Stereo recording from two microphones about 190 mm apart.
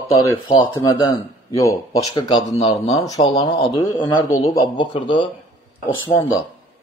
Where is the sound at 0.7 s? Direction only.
20° left (ahead or behind).